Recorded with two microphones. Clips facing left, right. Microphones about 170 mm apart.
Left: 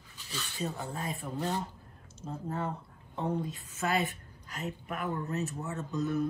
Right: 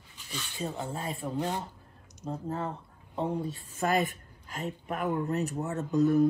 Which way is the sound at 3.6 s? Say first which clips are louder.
Right 3 dB; 40° right (ahead or behind).